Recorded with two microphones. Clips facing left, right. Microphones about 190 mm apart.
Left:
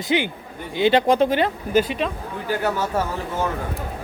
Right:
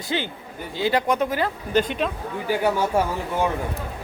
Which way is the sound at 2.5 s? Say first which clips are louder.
Right 2 dB; 10° right (ahead or behind).